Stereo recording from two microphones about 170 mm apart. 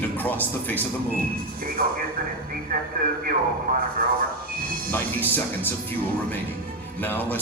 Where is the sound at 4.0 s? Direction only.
60° right (ahead or behind).